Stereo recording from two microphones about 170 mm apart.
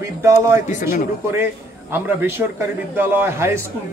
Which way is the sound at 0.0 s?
15° right (ahead or behind).